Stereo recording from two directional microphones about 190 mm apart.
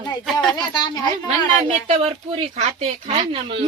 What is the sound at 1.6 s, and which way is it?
Speech, 35° right (ahead or behind).